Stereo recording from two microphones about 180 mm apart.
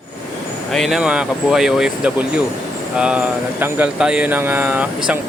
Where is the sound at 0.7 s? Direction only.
Centre (ahead or behind).